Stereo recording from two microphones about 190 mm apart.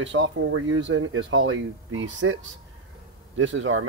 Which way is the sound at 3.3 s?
90° right.